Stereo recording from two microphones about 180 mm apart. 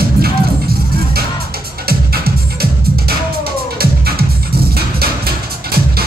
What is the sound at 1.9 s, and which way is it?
Music, 60° right (ahead or behind).